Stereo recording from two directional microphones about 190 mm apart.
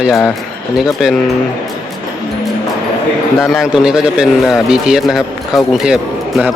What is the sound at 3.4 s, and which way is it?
A man's voice, centre (ahead or behind).